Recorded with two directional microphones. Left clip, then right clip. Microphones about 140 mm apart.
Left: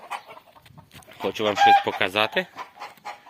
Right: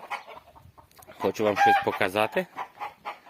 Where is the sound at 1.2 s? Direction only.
25° right (ahead or behind).